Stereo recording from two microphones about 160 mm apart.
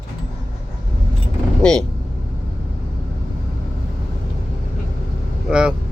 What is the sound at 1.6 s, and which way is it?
Speech, 5° left (ahead or behind).